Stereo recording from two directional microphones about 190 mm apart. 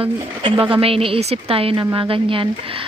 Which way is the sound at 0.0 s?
30° right (ahead or behind).